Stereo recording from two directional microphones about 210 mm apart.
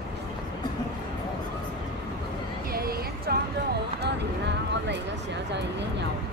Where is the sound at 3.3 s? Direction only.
50° right (ahead or behind).